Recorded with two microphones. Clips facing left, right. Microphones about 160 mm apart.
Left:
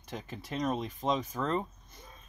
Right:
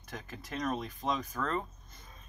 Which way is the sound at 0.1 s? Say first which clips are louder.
Left 3 dB; 25° left (ahead or behind).